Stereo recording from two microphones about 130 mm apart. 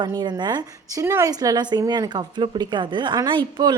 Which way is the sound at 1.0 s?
25° right (ahead or behind).